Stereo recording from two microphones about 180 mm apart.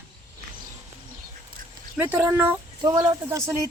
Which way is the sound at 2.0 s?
10° right (ahead or behind).